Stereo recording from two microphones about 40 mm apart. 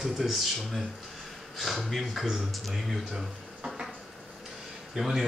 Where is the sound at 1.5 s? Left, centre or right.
Centre.